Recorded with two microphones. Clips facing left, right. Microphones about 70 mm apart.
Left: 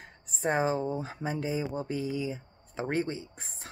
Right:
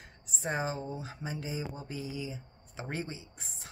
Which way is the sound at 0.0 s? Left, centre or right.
Left.